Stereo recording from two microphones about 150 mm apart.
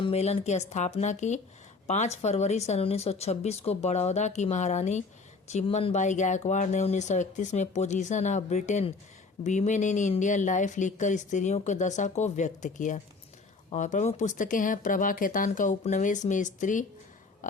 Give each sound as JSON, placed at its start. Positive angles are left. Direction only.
{"t": 0.0, "sound": "speech", "side_deg": 45}